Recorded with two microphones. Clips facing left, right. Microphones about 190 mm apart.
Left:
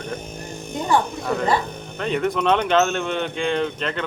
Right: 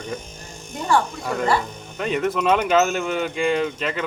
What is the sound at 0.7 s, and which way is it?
Electric shaver, 20° left (ahead or behind).